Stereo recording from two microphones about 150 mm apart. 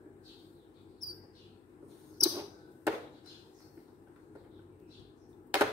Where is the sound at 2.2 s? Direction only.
25° right (ahead or behind).